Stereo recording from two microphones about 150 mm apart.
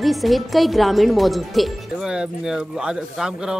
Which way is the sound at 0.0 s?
Centre (ahead or behind).